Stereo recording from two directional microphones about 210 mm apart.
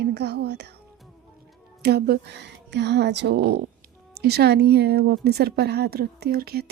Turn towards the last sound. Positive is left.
turn(degrees=-45)  # may be behind; listen again after turning